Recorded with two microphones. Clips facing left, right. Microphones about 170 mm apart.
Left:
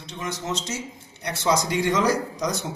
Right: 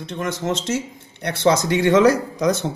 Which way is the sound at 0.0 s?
55° right (ahead or behind).